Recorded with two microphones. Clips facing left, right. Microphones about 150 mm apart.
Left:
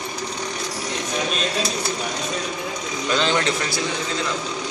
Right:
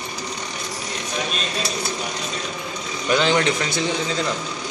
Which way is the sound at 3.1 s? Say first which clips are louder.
Right 3 dB; 15° right (ahead or behind).